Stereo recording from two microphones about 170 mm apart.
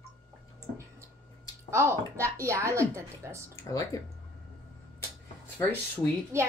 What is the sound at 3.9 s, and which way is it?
Speech, 20° left (ahead or behind).